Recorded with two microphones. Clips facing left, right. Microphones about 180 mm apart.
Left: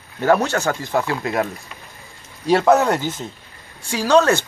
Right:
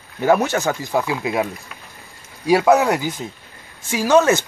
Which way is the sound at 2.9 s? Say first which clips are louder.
Even; 15° right (ahead or behind).